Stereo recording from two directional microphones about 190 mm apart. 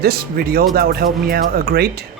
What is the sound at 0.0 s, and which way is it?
Speech, 50° right (ahead or behind).